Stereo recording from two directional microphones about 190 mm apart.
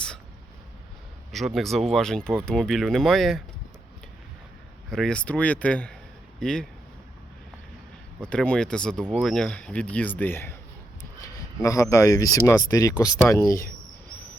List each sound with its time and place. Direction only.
1.3 s speech: centre (ahead or behind)
4.9 s speech: 5° left (ahead or behind)
8.2 s speech: 5° left (ahead or behind)